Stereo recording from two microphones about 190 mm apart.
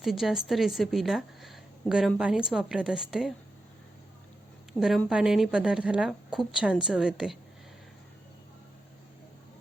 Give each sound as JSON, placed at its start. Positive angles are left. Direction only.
{"t": 0.0, "sound": "a woman's voice", "side_deg": 0}
{"t": 4.8, "sound": "a woman's voice", "side_deg": 0}